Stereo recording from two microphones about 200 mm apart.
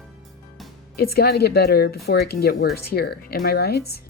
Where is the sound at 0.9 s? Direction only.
50° left (ahead or behind).